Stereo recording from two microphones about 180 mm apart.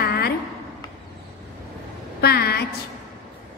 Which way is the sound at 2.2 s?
60° left (ahead or behind).